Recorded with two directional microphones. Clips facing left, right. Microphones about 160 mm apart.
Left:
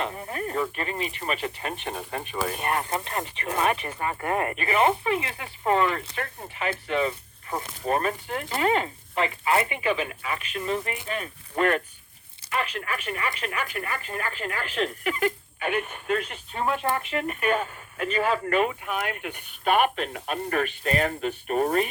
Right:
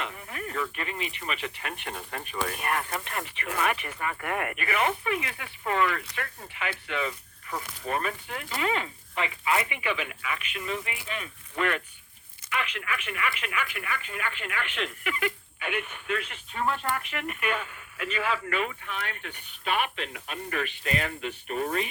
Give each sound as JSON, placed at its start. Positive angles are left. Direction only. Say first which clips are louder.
{"t": 0.0, "sound": "speech", "louder": "left 6 dB", "side_deg": 35}